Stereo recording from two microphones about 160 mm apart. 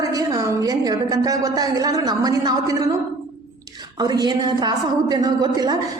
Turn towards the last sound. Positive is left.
turn(degrees=-25)  # may be behind; listen again after turning